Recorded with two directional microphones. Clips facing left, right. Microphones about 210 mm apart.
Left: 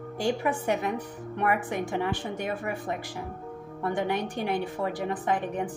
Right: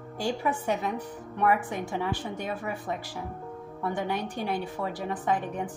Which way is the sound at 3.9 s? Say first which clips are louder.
Left 3 dB; 15° left (ahead or behind).